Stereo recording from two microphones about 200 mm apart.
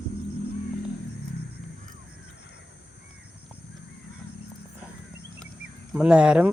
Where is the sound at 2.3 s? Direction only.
60° left (ahead or behind).